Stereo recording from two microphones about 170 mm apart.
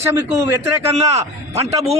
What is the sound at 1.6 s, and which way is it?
Speech, 40° right (ahead or behind).